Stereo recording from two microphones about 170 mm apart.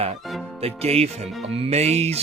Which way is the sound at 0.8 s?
35° right (ahead or behind).